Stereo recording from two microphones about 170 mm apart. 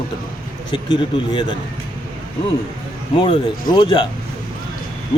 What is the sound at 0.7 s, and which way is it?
Speech, 25° left (ahead or behind).